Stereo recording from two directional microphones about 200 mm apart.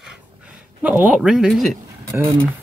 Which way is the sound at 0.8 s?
5° right (ahead or behind).